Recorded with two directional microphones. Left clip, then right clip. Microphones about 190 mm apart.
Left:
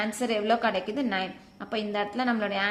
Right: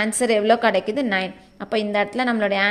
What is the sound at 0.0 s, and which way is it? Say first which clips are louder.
A woman's voice: right 9 dB; 35° right (ahead or behind).